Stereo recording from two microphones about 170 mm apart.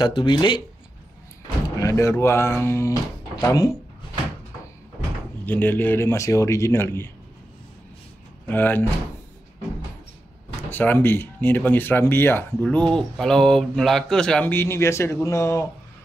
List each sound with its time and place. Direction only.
0.0 s speech: 25° left (ahead or behind)
1.8 s speech: 15° left (ahead or behind)
5.4 s speech: 10° left (ahead or behind)
8.5 s speech: 10° left (ahead or behind)
10.7 s speech: 10° left (ahead or behind)